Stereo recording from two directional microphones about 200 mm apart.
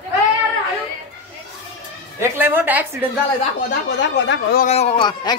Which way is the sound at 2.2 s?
10° right (ahead or behind).